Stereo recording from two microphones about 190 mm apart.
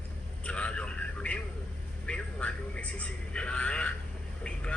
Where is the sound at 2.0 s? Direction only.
5° left (ahead or behind).